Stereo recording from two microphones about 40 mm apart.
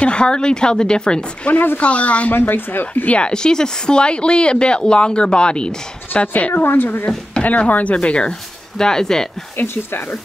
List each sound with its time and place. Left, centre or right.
0.0 s speech: left
1.5 s speech: left
1.8 s speech: left
2.3 s speech: left
2.9 s speech: left
3.2 s speech: left
6.5 s speech: left
7.4 s speech: left
8.0 s speech: left
9.6 s speech: left